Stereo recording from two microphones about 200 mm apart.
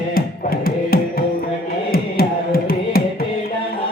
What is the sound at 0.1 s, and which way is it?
Music, 50° left (ahead or behind).